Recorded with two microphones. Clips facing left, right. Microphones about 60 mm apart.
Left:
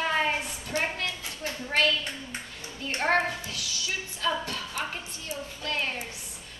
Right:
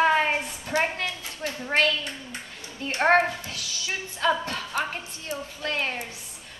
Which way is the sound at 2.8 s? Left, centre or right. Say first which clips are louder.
Right 5 dB; right.